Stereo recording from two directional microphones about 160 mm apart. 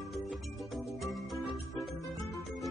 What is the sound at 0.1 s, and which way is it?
Music, centre (ahead or behind).